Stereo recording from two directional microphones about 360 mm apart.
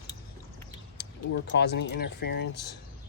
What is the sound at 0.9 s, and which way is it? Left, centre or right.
Speech, left.